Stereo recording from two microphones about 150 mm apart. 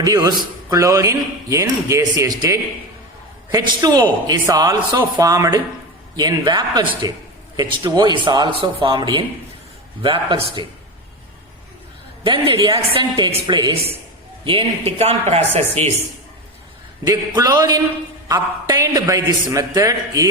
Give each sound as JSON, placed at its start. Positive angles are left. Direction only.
{"t": 0.0, "sound": "a man's voice", "side_deg": -25}
{"t": 12.2, "sound": "a man's voice", "side_deg": -30}
{"t": 17.0, "sound": "a man's voice", "side_deg": -25}